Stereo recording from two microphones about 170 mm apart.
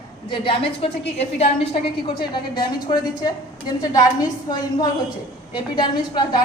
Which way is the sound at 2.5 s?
25° left (ahead or behind).